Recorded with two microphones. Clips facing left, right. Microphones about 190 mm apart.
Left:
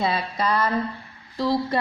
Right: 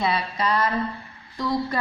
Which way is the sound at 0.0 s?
30° left (ahead or behind).